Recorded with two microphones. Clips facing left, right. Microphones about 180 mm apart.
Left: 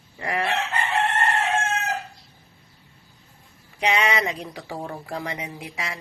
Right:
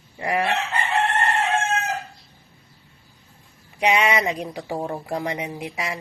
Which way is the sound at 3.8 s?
15° right (ahead or behind).